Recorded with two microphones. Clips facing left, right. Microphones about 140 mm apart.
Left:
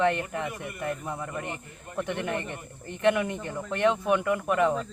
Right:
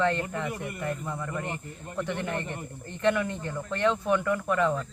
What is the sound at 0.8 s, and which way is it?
Speech, 20° left (ahead or behind).